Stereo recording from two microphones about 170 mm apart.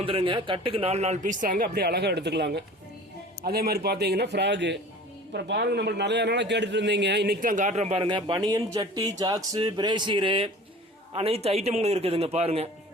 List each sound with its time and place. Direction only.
0.0 s speech: 30° right (ahead or behind); by 2.6 s 80° right
3.4 s a man's voice: 65° right (ahead or behind); by 4.8 s 90° right
5.3 s a man's voice: 70° right (ahead or behind)
7.4 s speech: 45° right (ahead or behind)
8.0 s a man's voice: 25° right (ahead or behind)